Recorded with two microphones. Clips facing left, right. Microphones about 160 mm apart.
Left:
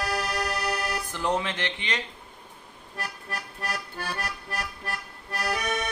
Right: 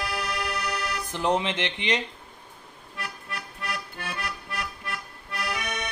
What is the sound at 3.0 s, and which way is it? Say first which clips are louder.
Music: left 1 dB; 40° left (ahead or behind).